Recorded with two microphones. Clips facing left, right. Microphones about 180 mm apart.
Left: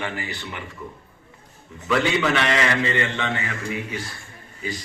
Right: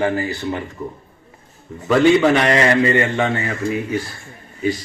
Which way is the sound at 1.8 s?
40° right (ahead or behind).